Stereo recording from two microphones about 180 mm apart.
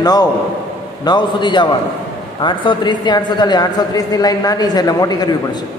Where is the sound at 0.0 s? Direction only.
20° left (ahead or behind).